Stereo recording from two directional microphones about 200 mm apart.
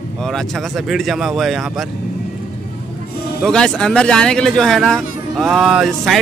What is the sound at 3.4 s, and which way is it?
Speech, 5° left (ahead or behind).